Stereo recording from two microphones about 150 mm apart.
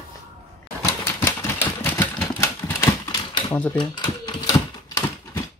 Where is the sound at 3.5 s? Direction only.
10° left (ahead or behind).